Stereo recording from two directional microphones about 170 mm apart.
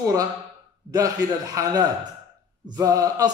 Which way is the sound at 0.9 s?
20° right (ahead or behind).